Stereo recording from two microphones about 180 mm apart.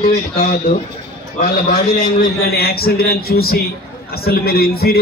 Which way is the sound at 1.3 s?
45° left (ahead or behind).